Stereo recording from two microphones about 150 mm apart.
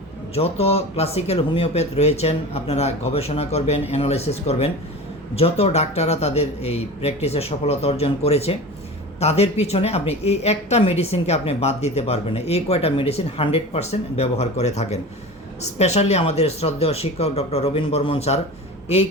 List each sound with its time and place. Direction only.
0.3 s a woman's voice: 40° left (ahead or behind)